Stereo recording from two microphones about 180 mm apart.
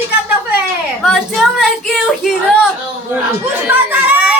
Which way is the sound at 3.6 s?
10° right (ahead or behind).